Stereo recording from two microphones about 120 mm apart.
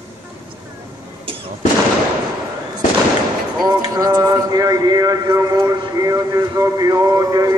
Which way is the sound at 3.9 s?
30° right (ahead or behind).